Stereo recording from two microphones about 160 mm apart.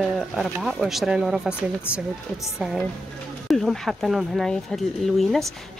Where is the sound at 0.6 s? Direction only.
Centre (ahead or behind).